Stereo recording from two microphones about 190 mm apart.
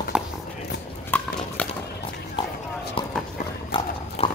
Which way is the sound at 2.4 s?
25° left (ahead or behind).